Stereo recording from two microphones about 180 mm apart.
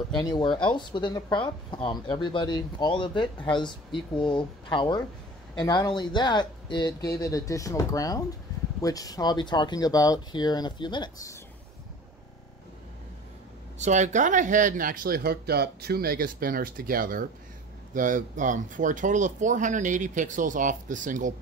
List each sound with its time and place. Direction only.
0.2 s speech: 25° left (ahead or behind)
13.7 s speech: 40° right (ahead or behind)